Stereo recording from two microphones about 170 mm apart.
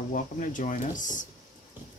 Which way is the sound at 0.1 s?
50° left (ahead or behind).